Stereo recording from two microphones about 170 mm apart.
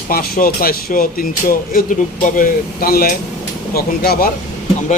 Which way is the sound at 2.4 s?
60° left (ahead or behind).